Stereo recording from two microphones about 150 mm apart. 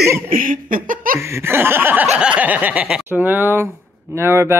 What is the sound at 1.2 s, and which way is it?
Speech, 15° right (ahead or behind).